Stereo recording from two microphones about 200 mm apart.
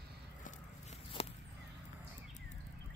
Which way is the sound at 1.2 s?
30° left (ahead or behind).